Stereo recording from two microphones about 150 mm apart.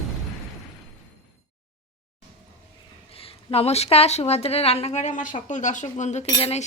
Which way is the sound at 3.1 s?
40° left (ahead or behind).